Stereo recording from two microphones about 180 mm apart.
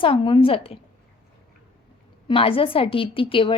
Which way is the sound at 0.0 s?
30° left (ahead or behind).